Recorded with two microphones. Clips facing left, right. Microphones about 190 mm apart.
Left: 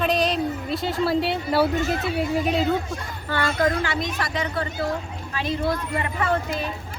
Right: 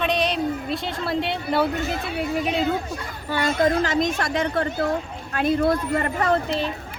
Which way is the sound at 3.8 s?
45° right (ahead or behind).